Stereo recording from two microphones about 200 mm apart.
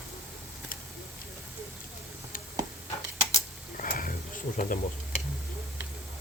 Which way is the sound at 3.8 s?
45° left (ahead or behind).